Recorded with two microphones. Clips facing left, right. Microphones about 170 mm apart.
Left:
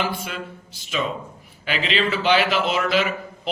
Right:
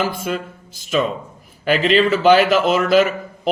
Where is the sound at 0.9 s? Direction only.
45° right (ahead or behind).